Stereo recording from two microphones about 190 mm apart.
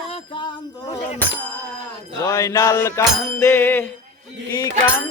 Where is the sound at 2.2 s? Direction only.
15° left (ahead or behind).